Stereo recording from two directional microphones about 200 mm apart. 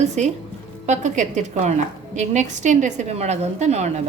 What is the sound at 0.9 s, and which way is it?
A woman's voice, 35° right (ahead or behind).